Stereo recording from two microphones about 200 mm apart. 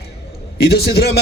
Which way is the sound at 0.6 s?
55° left (ahead or behind).